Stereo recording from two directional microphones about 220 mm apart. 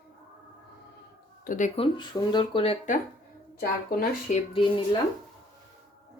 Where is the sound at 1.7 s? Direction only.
20° left (ahead or behind).